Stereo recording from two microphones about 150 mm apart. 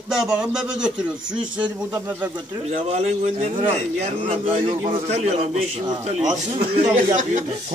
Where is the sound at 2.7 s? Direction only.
45° right (ahead or behind).